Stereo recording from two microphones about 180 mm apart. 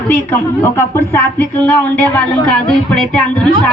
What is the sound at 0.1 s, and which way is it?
Speech, 10° left (ahead or behind).